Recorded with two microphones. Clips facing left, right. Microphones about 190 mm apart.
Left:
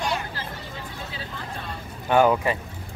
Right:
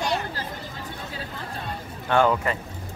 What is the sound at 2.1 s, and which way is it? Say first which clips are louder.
Speech: left 2 dB; 10° left (ahead or behind).